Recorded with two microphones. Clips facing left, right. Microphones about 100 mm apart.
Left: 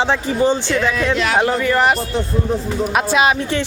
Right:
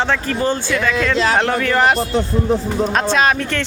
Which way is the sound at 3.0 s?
10° left (ahead or behind).